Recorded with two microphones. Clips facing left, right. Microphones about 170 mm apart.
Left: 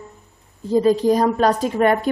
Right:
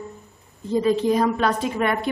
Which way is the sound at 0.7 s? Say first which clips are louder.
Left 4 dB; 40° left (ahead or behind).